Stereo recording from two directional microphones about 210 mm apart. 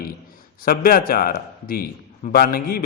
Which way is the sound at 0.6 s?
45° left (ahead or behind).